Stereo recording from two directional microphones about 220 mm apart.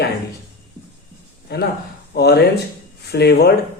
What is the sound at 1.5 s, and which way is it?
A man's voice, 50° left (ahead or behind).